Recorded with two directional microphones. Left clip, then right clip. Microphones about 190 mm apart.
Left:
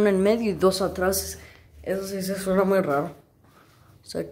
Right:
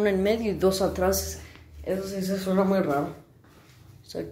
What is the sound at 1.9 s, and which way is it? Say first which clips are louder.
Speech: left 1 dB; 35° left (ahead or behind).